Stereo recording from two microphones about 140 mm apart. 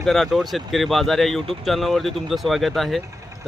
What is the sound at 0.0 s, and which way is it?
Speech, centre (ahead or behind).